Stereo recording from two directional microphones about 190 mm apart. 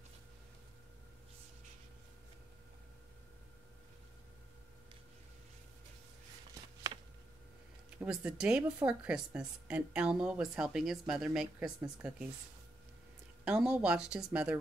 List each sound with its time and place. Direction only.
6.5 s a sound: 20° right (ahead or behind)
8.0 s speech: 5° right (ahead or behind)
13.5 s speech: 5° right (ahead or behind)